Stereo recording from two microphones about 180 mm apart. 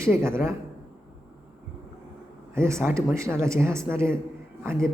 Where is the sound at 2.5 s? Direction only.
15° right (ahead or behind).